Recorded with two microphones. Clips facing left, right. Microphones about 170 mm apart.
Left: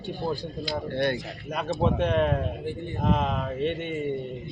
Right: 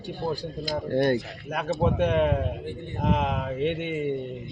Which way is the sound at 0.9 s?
45° right (ahead or behind).